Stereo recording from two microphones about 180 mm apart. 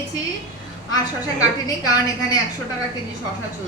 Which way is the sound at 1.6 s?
20° left (ahead or behind).